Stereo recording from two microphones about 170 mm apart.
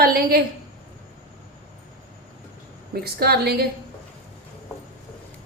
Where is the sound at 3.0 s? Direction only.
70° right (ahead or behind).